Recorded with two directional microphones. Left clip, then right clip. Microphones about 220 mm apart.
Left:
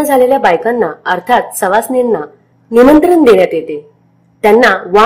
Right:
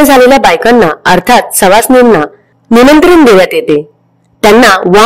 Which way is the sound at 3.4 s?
50° right (ahead or behind).